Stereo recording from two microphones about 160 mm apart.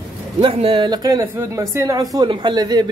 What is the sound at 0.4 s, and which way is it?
Speech, 35° right (ahead or behind).